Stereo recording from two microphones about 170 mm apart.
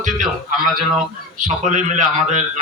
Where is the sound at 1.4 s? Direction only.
45° right (ahead or behind).